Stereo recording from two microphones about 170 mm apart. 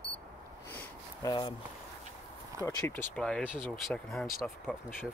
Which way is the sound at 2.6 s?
15° left (ahead or behind).